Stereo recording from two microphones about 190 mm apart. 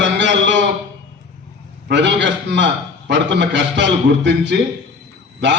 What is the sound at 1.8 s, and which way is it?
A man's voice, 70° right (ahead or behind).